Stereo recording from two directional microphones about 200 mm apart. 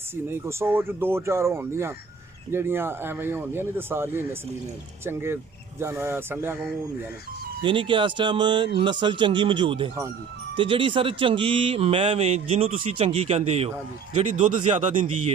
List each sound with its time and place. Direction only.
0.3 s speech: 10° right (ahead or behind)
7.6 s speech: 25° right (ahead or behind)